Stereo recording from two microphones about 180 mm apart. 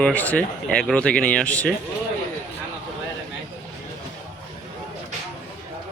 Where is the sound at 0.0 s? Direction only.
10° left (ahead or behind).